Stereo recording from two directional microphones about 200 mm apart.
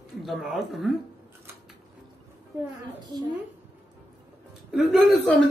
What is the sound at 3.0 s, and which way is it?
Speech, 20° right (ahead or behind).